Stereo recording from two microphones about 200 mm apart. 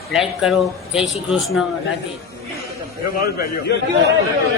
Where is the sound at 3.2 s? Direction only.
50° left (ahead or behind).